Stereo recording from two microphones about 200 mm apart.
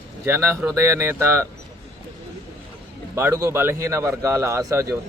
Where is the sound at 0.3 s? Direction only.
10° right (ahead or behind).